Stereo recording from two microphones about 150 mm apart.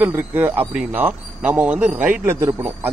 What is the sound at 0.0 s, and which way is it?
Speech, 15° right (ahead or behind).